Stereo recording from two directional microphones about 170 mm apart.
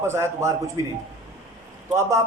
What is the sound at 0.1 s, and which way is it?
Speech, 15° right (ahead or behind).